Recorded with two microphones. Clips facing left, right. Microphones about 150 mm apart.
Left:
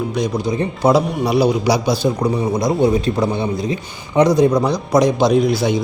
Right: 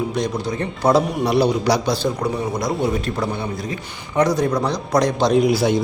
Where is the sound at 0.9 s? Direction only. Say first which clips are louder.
Left 1 dB; centre (ahead or behind).